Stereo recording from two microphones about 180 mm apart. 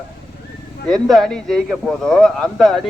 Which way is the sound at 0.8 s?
Centre (ahead or behind).